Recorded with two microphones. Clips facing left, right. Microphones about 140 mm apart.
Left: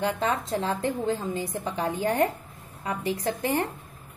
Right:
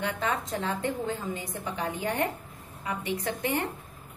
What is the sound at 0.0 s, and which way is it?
A woman's voice, 30° left (ahead or behind).